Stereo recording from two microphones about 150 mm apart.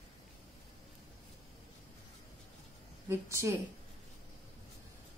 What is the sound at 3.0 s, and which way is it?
Speech, 20° right (ahead or behind).